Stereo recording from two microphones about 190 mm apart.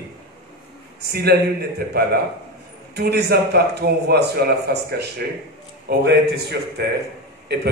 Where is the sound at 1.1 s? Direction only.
60° right (ahead or behind).